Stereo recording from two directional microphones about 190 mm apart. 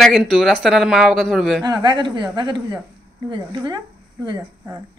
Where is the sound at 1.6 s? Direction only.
20° right (ahead or behind).